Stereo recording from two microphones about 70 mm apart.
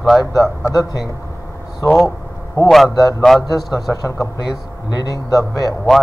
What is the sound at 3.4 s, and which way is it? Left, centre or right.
Speech, left.